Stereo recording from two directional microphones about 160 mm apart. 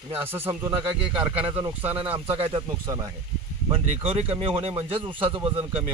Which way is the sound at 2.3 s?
35° right (ahead or behind).